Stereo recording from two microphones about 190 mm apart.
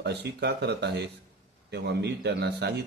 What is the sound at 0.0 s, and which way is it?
A man's voice, 60° right (ahead or behind).